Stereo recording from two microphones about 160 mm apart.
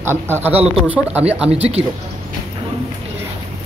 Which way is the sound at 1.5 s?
40° right (ahead or behind).